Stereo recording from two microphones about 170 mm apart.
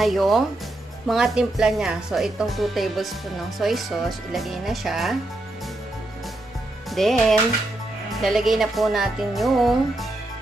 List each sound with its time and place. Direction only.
0.0 s speech: centre (ahead or behind)
6.9 s speech: centre (ahead or behind)